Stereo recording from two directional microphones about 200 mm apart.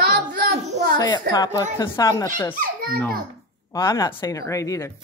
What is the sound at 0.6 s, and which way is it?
Speech, 35° right (ahead or behind).